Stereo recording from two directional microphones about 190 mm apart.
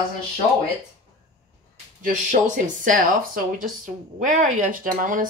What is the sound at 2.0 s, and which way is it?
Speech, 40° right (ahead or behind).